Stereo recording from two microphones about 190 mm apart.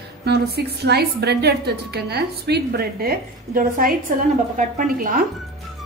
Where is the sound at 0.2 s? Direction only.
60° right (ahead or behind).